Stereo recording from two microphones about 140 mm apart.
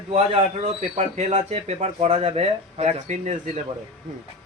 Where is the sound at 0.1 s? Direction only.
50° right (ahead or behind).